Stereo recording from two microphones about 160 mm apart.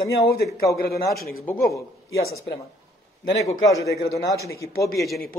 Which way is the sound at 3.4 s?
20° left (ahead or behind).